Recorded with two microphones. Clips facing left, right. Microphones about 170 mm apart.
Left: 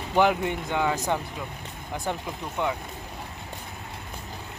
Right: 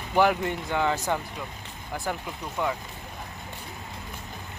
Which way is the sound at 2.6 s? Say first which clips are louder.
Left 1 dB; 20° left (ahead or behind).